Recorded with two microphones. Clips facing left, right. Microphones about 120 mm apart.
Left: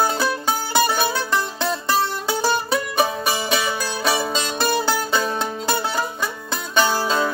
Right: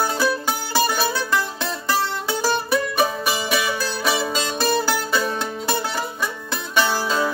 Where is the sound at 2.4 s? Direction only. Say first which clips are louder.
Right 1 dB; 20° left (ahead or behind).